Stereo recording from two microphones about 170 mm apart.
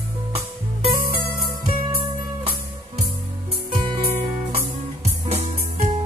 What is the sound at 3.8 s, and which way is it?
Music, 30° right (ahead or behind).